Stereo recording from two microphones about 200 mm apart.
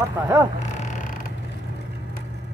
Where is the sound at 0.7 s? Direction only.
40° left (ahead or behind).